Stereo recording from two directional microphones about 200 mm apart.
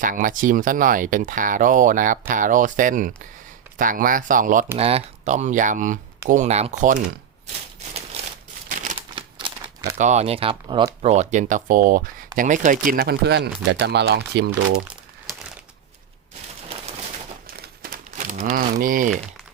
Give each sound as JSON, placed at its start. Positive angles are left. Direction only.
{"t": 0.0, "sound": "speech", "side_deg": -40}
{"t": 4.8, "sound": "speech", "side_deg": -30}
{"t": 8.7, "sound": "typewriter", "side_deg": -40}
{"t": 9.0, "sound": "crumpling", "side_deg": -25}
{"t": 10.0, "sound": "speech", "side_deg": -35}
{"t": 17.4, "sound": "crumpling", "side_deg": -45}